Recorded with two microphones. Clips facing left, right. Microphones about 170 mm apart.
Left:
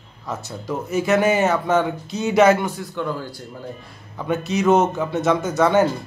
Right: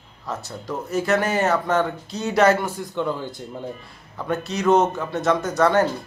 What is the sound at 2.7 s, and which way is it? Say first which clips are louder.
Speech: right 1 dB; 15° right (ahead or behind).